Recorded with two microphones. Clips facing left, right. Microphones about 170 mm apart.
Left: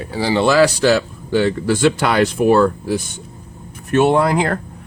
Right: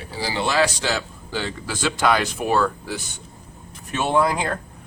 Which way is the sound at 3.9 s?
65° left (ahead or behind).